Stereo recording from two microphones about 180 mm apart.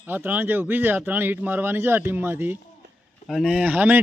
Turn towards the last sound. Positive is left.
turn(degrees=-10)  # may be behind; listen again after turning